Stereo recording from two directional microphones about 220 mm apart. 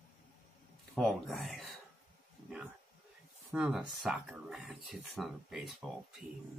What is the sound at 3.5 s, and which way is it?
Speech, 5° right (ahead or behind).